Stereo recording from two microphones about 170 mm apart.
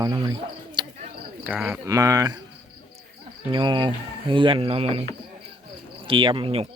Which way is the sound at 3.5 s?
30° right (ahead or behind).